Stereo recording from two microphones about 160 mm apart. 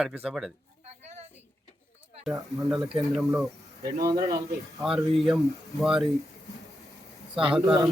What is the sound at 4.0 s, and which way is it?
Speech, 25° right (ahead or behind).